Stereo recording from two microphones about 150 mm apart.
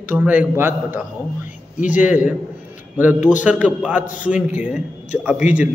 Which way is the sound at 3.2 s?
55° left (ahead or behind).